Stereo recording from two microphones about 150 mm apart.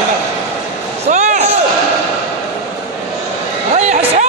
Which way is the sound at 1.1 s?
50° right (ahead or behind).